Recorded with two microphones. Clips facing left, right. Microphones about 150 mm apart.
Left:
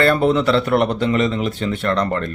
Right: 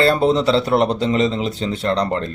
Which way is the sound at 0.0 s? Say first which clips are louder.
Even; 30° right (ahead or behind).